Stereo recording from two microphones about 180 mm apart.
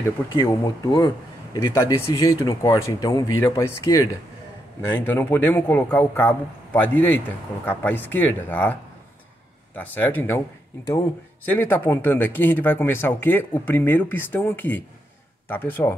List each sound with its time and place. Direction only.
0.3 s a man's voice: 15° left (ahead or behind)
9.8 s a man's voice: 10° left (ahead or behind)
11.5 s a man's voice: 10° left (ahead or behind)